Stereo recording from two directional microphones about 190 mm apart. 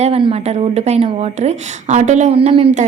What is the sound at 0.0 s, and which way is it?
Speech, 30° right (ahead or behind).